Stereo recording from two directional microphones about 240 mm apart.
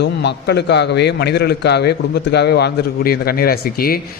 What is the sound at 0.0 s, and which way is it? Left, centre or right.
A man's voice, left.